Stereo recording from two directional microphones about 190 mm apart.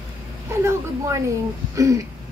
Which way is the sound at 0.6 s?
15° right (ahead or behind).